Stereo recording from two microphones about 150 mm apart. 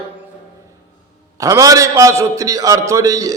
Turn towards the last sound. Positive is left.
turn(degrees=-25)  # may be behind; listen again after turning